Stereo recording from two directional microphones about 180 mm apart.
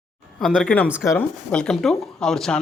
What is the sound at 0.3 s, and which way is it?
Speech, 5° left (ahead or behind).